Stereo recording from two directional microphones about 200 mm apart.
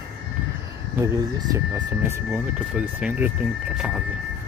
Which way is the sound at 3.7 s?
5° right (ahead or behind).